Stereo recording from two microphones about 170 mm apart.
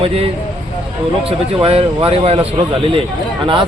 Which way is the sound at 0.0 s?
35° right (ahead or behind).